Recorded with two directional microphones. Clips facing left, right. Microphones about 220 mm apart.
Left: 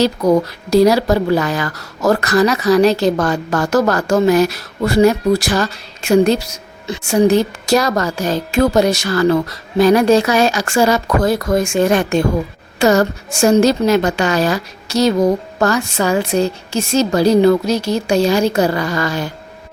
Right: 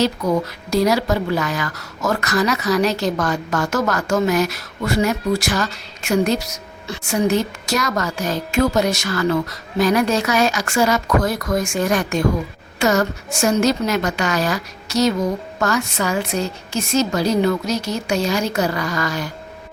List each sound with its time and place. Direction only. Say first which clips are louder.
0.0 s a woman's voice: left 5 dB; 35° left (ahead or behind)